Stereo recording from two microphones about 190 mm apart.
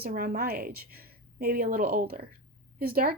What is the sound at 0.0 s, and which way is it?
A woman's voice, 50° right (ahead or behind).